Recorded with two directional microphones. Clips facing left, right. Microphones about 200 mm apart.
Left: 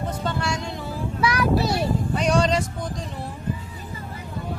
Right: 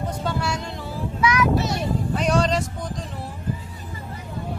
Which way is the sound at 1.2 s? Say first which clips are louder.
Right 1 dB; 35° left (ahead or behind).